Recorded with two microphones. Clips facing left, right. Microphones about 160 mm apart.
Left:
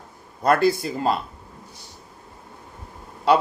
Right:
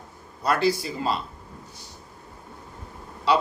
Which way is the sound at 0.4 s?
50° left (ahead or behind).